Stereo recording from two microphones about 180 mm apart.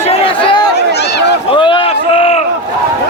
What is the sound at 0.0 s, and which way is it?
Chatter, 30° left (ahead or behind).